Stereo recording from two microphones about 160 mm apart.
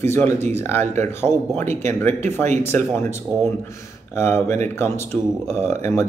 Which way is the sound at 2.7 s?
15° left (ahead or behind).